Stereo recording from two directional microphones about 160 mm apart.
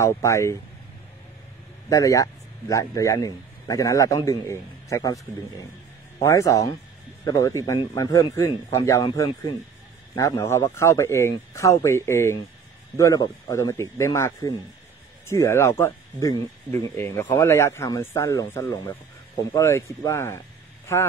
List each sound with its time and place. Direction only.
0.0 s speech: 20° left (ahead or behind)
1.9 s a man's voice: 20° left (ahead or behind)
6.2 s a man's voice: 20° left (ahead or behind)